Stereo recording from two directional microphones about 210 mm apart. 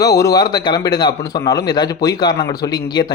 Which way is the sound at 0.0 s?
15° left (ahead or behind).